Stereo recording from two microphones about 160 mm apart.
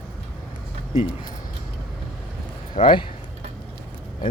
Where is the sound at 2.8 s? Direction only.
50° left (ahead or behind).